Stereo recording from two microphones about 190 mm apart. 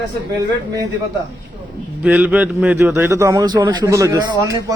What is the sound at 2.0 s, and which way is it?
A man's voice, 5° right (ahead or behind).